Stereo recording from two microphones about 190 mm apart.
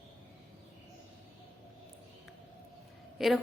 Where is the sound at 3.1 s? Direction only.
Centre (ahead or behind).